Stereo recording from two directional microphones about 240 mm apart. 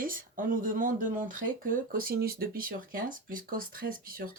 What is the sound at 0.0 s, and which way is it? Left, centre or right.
Speech, right.